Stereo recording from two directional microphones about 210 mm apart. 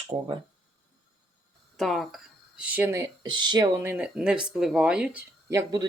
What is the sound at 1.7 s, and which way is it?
Speech, centre (ahead or behind).